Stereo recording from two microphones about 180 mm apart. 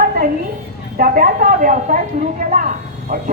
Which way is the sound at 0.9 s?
50° right (ahead or behind).